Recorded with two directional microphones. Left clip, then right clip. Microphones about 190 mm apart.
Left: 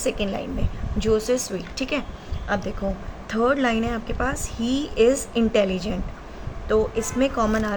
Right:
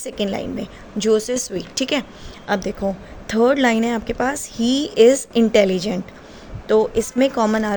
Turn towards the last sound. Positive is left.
turn(degrees=-40)  # may be behind; listen again after turning